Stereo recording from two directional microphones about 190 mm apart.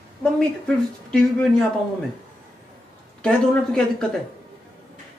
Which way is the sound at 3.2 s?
5° left (ahead or behind).